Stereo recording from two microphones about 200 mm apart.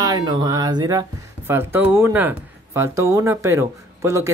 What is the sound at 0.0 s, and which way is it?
Speech, 20° right (ahead or behind).